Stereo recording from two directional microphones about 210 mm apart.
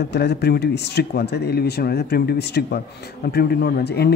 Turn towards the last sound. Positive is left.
turn(degrees=50)  # may be behind; listen again after turning